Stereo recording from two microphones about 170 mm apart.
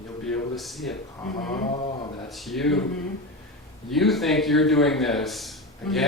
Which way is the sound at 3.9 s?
Centre (ahead or behind).